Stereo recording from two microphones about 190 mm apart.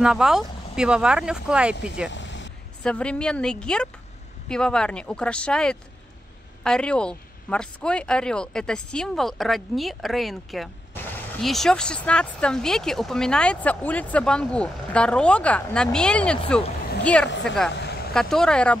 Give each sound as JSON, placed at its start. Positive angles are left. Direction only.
{"t": 0.0, "sound": "speech", "side_deg": -5}
{"t": 2.0, "sound": "vehicle", "side_deg": 70}
{"t": 2.8, "sound": "speech", "side_deg": 5}
{"t": 17.3, "sound": "speech", "side_deg": 70}
{"t": 17.6, "sound": "vehicle", "side_deg": 65}
{"t": 18.1, "sound": "speech", "side_deg": 5}